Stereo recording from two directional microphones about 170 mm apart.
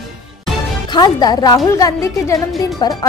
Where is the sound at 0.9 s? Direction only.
25° left (ahead or behind).